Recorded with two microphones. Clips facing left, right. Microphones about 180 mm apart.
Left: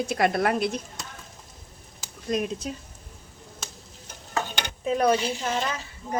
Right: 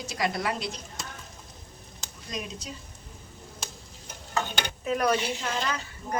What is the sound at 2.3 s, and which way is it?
Speech, 55° left (ahead or behind).